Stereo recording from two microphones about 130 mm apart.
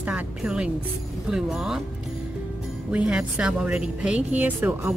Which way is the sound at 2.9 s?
10° right (ahead or behind).